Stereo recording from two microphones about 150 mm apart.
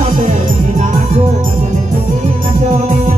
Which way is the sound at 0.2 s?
55° right (ahead or behind).